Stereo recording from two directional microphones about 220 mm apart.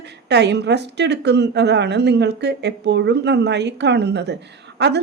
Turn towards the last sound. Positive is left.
turn(degrees=-50)  # may be behind; listen again after turning